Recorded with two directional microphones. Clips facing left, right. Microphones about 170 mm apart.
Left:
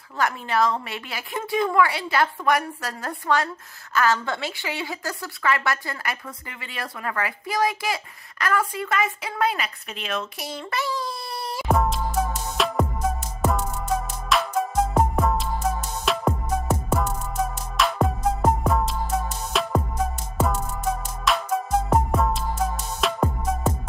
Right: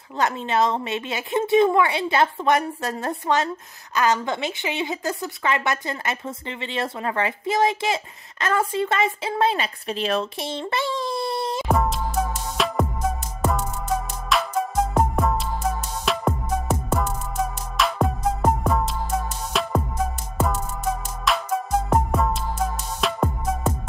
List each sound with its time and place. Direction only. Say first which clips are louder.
0.2 s a woman's voice: right 1 dB; 25° right (ahead or behind)
11.6 s music: left 3 dB; centre (ahead or behind)